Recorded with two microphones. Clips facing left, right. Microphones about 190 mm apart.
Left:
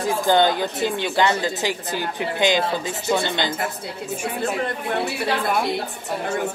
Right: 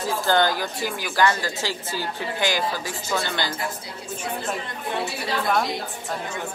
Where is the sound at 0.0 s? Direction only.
15° left (ahead or behind).